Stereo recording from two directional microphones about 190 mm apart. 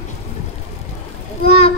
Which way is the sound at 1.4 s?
35° left (ahead or behind).